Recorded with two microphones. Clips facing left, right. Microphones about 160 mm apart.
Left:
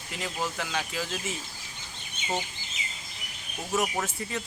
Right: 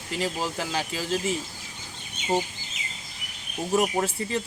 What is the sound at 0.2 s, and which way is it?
Speech, 30° right (ahead or behind).